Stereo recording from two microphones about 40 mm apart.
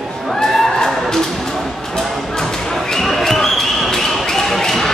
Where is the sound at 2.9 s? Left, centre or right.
Centre.